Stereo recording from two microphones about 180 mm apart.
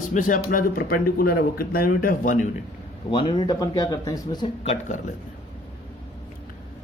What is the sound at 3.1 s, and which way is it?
Speech, 25° left (ahead or behind).